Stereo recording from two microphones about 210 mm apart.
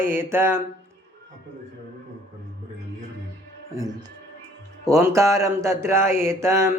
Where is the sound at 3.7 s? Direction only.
15° right (ahead or behind).